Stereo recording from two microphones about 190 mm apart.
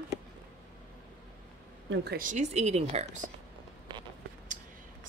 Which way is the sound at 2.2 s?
40° right (ahead or behind).